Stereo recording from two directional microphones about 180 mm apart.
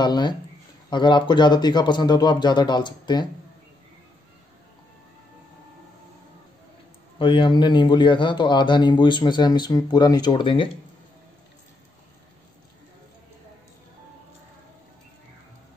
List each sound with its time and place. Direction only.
0.0 s a man's voice: 25° left (ahead or behind)
7.2 s a man's voice: 30° left (ahead or behind)